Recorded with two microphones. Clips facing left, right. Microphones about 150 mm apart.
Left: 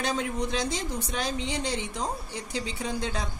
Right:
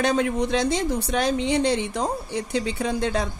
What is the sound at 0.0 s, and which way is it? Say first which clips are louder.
A woman's voice: right 7 dB; 65° right (ahead or behind).